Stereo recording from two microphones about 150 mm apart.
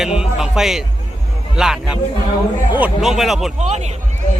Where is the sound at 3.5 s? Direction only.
50° right (ahead or behind).